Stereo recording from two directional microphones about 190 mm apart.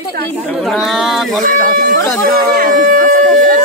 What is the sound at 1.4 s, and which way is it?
Speech, 45° right (ahead or behind).